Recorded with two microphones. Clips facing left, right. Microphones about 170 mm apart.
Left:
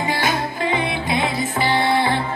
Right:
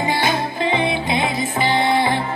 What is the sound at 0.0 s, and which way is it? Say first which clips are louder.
Music: right 2 dB; 25° right (ahead or behind).